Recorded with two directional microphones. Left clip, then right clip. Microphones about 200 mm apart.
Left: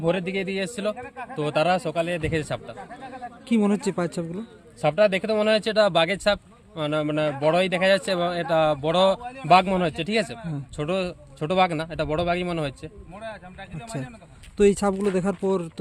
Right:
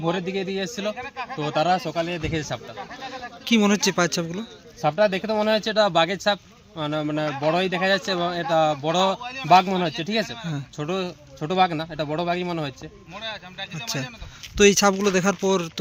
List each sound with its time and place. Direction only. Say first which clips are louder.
0.0 s speech: left 1 dB; 30° left (ahead or behind)
0.9 s speech: right 4 dB; 55° left (ahead or behind)
1.4 s speech: even; 25° left (ahead or behind)
2.7 s speech: right 4 dB; 60° left (ahead or behind)
3.4 s speech: right 4 dB; 5° left (ahead or behind)
4.8 s speech: left 1 dB; 30° left (ahead or behind)
9.2 s speech: right 4 dB; 55° left (ahead or behind)
9.5 s a man's voice: right 1 dB; 30° left (ahead or behind)
13.1 s speech: right 5 dB; 55° left (ahead or behind)
14.5 s speech: right 3 dB; 5° left (ahead or behind)